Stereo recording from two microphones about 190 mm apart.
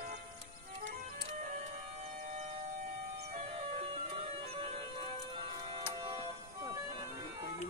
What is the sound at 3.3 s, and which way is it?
Music, 30° right (ahead or behind).